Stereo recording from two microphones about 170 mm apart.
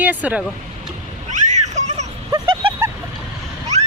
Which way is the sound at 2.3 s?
25° right (ahead or behind).